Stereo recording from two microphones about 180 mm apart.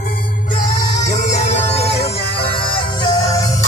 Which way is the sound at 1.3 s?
40° left (ahead or behind).